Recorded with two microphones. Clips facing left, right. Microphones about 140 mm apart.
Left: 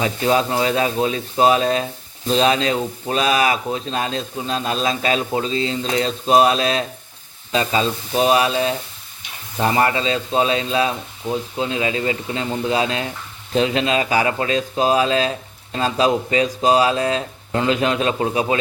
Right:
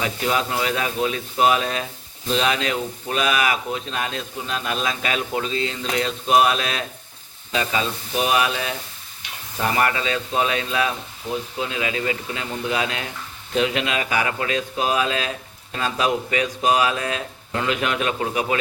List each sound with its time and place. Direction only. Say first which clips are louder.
0.0 s speech: left 5 dB; 30° left (ahead or behind)